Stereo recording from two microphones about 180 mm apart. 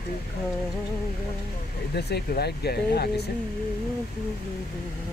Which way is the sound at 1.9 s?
65° left (ahead or behind).